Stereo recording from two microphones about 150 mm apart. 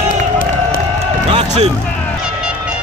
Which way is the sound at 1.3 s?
40° right (ahead or behind).